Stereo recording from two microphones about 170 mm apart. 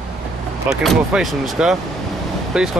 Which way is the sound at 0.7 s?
Centre (ahead or behind).